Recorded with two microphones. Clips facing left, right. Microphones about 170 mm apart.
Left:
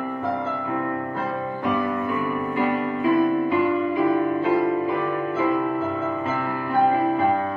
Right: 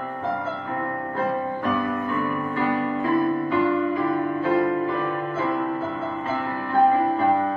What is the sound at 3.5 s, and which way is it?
Music, 15° left (ahead or behind).